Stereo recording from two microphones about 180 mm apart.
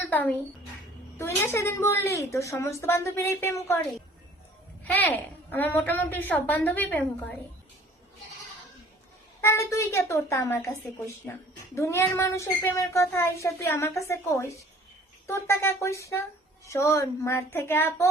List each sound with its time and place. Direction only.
0.1 s a child's voice: 10° left (ahead or behind)
4.8 s a woman's voice: 10° left (ahead or behind)
9.4 s a woman's voice: 15° left (ahead or behind)